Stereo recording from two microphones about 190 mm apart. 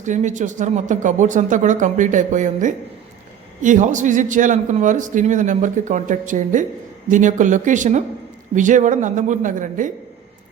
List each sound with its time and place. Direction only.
0.0 s a man's voice: 40° right (ahead or behind)